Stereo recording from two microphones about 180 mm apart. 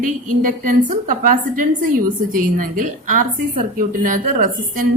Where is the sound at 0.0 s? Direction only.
50° right (ahead or behind).